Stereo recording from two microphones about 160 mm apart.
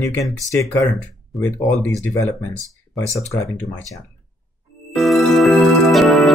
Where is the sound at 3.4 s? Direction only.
Centre (ahead or behind).